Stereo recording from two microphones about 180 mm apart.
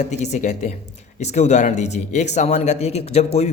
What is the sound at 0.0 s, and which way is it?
A man's voice, 40° left (ahead or behind).